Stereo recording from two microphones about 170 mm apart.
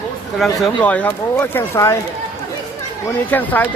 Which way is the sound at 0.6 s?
10° left (ahead or behind).